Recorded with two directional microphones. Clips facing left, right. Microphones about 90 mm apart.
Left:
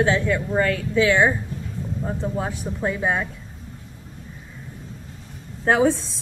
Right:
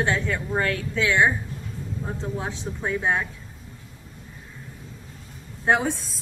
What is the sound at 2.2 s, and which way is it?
Speech, 15° left (ahead or behind).